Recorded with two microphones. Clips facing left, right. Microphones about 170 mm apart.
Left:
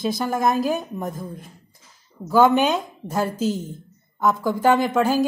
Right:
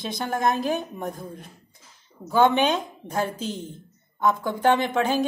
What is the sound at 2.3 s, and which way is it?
A woman's voice, 5° left (ahead or behind).